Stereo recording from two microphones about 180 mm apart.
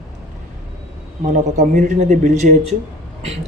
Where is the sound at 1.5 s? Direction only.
45° right (ahead or behind).